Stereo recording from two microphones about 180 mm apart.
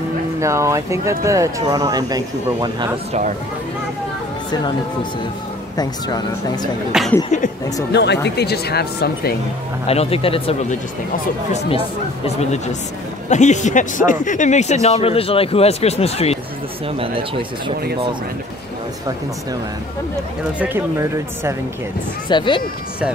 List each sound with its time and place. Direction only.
0.4 s speech: 15° right (ahead or behind)
3.1 s speech: 45° right (ahead or behind)
5.8 s speech: 20° left (ahead or behind)
6.9 s speech: centre (ahead or behind)
7.2 s speech: 45° left (ahead or behind)
7.9 s speech: 70° left (ahead or behind)
9.8 s a man's voice: 35° left (ahead or behind)
13.3 s a man's voice: 40° left (ahead or behind)
16.8 s speech: 30° right (ahead or behind)
20.5 s speech: 10° right (ahead or behind)
22.3 s speech: 25° left (ahead or behind)